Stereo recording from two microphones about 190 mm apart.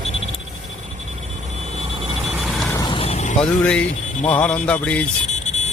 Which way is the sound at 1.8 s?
30° right (ahead or behind).